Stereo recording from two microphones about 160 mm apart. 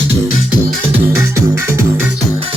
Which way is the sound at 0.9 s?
15° right (ahead or behind).